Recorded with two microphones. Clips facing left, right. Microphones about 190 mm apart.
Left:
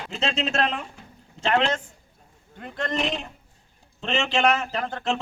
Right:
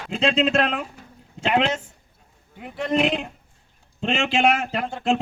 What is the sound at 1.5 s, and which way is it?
Speech, 5° right (ahead or behind).